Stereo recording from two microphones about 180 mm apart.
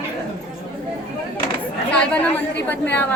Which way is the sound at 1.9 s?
5° left (ahead or behind).